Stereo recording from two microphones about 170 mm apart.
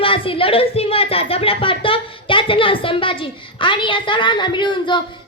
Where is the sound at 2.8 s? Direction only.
30° left (ahead or behind).